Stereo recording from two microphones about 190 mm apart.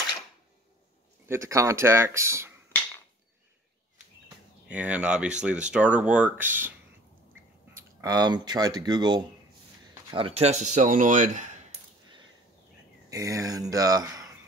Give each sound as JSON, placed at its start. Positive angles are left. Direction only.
{"t": 1.2, "sound": "speech", "side_deg": -15}
{"t": 4.6, "sound": "speech", "side_deg": -5}
{"t": 7.7, "sound": "speech", "side_deg": -20}
{"t": 13.1, "sound": "speech", "side_deg": -20}